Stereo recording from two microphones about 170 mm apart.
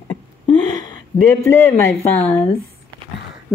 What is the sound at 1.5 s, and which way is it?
Speech, 10° left (ahead or behind).